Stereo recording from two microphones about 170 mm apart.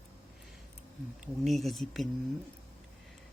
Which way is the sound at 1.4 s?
Centre (ahead or behind).